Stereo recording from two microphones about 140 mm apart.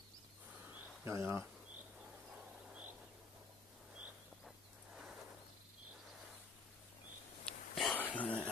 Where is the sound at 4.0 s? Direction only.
Centre (ahead or behind).